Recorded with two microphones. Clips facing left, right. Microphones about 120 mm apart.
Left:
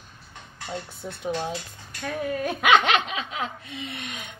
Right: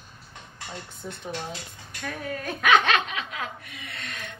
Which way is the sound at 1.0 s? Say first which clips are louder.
Left 1 dB; 30° left (ahead or behind).